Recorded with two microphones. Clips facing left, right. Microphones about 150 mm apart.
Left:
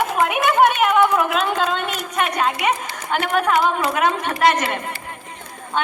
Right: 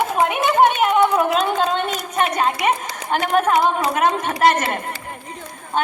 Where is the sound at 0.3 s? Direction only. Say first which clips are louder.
Even; 30° right (ahead or behind).